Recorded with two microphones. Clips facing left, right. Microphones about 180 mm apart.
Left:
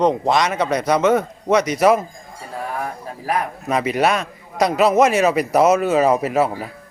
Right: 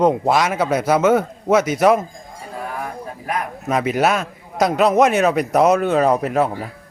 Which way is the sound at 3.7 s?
Centre (ahead or behind).